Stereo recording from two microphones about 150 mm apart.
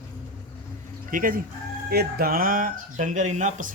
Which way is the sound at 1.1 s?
65° right (ahead or behind).